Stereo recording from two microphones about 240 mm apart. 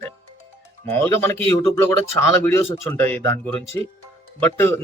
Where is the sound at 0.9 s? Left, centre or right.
Centre.